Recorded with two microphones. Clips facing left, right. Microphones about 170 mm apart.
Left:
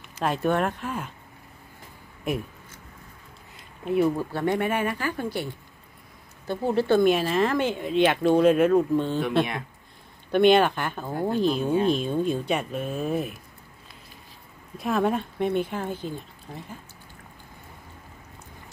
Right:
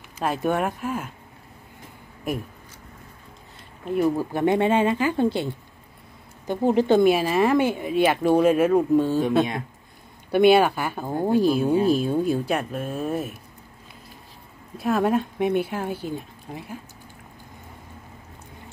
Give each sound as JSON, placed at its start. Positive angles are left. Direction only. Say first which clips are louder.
{"t": 0.2, "sound": "speech", "louder": "even", "side_deg": -5}
{"t": 4.2, "sound": "speech", "louder": "right 4 dB", "side_deg": -15}
{"t": 10.3, "sound": "speech", "louder": "right 2 dB", "side_deg": -10}
{"t": 14.8, "sound": "speech", "louder": "right 3 dB", "side_deg": -5}